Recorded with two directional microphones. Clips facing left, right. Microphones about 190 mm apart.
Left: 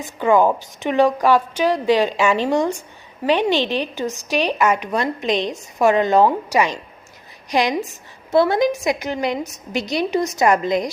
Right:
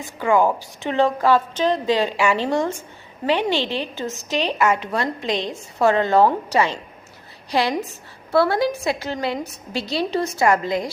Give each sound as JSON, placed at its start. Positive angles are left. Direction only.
{"t": 0.0, "sound": "speech", "side_deg": 20}